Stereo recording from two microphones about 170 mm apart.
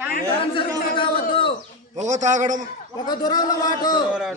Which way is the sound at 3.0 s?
25° left (ahead or behind).